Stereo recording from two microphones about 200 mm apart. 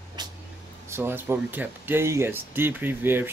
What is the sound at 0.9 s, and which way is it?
Speech, 10° right (ahead or behind).